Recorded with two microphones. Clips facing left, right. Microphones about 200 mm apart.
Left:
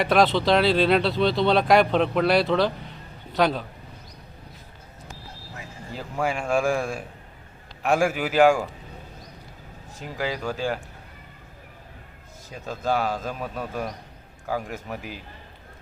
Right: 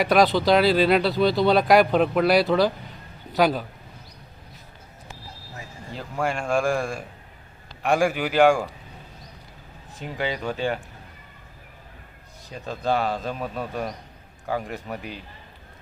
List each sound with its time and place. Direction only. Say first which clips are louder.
0.0 s speech: right 1 dB; centre (ahead or behind)
5.9 s speech: even; 5° left (ahead or behind)
10.0 s speech: right 1 dB; centre (ahead or behind)
12.5 s speech: right 1 dB; centre (ahead or behind)